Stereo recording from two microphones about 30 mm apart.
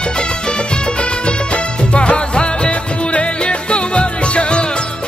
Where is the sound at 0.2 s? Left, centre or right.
Left.